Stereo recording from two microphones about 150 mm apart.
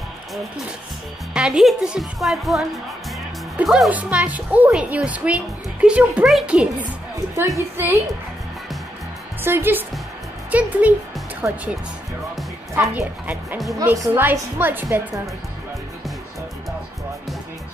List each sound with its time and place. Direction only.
1.3 s a woman's voice: 5° right (ahead or behind)
7.3 s a woman's voice: 20° right (ahead or behind)
9.4 s a woman's voice: 15° right (ahead or behind)
12.8 s a woman's voice: 10° right (ahead or behind)
13.7 s a woman's voice: 20° right (ahead or behind)